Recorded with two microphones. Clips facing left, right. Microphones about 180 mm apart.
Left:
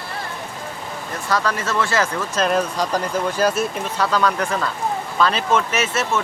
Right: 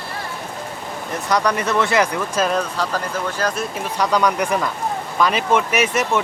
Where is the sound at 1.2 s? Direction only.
20° right (ahead or behind).